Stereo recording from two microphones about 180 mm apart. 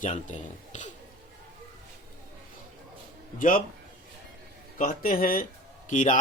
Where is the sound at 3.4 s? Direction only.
50° left (ahead or behind).